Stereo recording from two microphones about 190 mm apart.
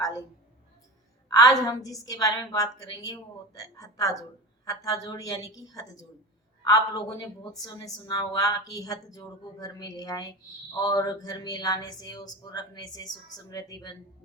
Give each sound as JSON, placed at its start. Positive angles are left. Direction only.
{"t": 1.3, "sound": "a woman's voice", "side_deg": 20}